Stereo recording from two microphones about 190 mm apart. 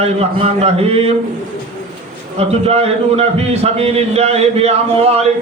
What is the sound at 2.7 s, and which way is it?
A man's voice, 30° right (ahead or behind).